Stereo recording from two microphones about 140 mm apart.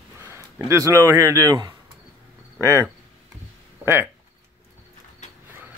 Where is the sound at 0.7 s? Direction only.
20° right (ahead or behind).